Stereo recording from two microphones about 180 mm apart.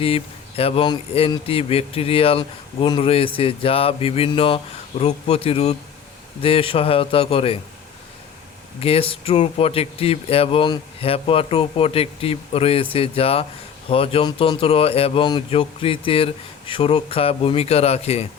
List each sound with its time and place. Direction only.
0.0 s speech: 30° left (ahead or behind)
8.8 s speech: 30° left (ahead or behind)